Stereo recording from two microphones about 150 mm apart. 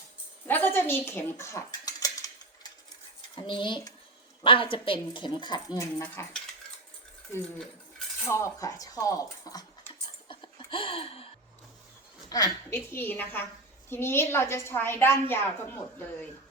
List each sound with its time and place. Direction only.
0.4 s speech: 15° left (ahead or behind)
3.3 s a woman's voice: 35° left (ahead or behind)
6.0 s a woman's voice: 10° left (ahead or behind)
8.3 s a sound: 20° left (ahead or behind); by 11.3 s 40° left (ahead or behind)
12.3 s a woman's voice: 20° left (ahead or behind)